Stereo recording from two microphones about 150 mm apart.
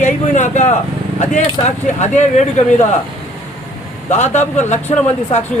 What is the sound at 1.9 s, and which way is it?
Speech, 50° left (ahead or behind).